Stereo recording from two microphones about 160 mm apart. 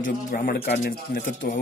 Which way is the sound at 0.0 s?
60° left (ahead or behind).